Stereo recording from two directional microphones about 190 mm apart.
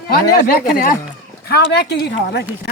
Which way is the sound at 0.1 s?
50° left (ahead or behind).